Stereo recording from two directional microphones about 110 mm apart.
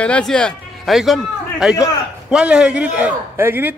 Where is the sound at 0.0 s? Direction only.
10° left (ahead or behind).